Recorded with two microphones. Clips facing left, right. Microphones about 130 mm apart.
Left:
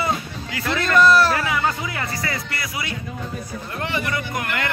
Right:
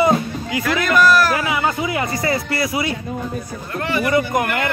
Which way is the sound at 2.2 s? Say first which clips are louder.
Right 8 dB; 25° right (ahead or behind).